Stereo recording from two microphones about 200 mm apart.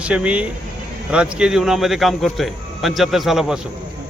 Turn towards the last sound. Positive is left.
turn(degrees=0)  # may be behind; listen again after turning